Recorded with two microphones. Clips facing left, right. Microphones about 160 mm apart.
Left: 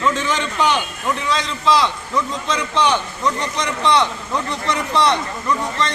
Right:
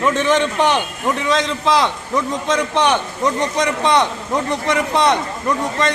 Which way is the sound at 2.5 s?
50° right (ahead or behind).